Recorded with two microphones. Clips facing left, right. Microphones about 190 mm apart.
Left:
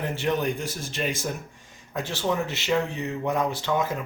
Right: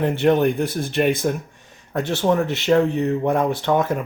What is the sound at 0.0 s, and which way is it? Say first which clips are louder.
Speech: right 9 dB; 60° right (ahead or behind).